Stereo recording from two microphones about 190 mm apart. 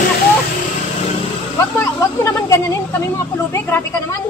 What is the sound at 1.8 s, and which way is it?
Speech, 15° left (ahead or behind).